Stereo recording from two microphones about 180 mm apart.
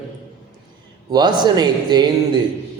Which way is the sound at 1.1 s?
25° right (ahead or behind).